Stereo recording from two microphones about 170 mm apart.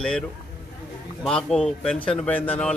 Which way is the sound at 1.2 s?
5° left (ahead or behind).